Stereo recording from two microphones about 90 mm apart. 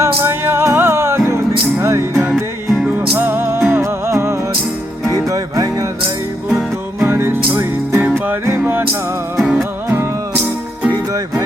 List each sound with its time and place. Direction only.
0.0 s music: 25° right (ahead or behind)
5.3 s music: 40° right (ahead or behind)
6.5 s music: 5° right (ahead or behind)
7.1 s music: 25° right (ahead or behind)
9.4 s music: centre (ahead or behind)